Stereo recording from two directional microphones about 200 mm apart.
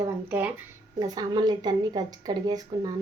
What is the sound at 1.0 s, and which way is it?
Speech, 20° right (ahead or behind).